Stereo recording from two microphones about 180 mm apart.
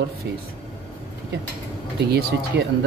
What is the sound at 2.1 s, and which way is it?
Speech, 65° right (ahead or behind).